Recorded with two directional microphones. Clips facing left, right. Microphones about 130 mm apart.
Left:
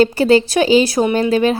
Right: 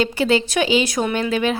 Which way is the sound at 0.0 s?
40° left (ahead or behind).